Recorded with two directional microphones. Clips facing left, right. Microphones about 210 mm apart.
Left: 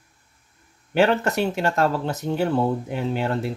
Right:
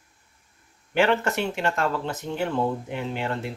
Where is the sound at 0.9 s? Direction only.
40° left (ahead or behind).